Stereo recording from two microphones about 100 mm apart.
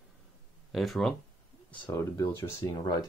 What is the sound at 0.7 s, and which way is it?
Speech, centre (ahead or behind).